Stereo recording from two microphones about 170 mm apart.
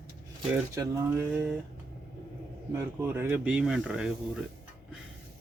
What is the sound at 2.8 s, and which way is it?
Speech, 15° right (ahead or behind).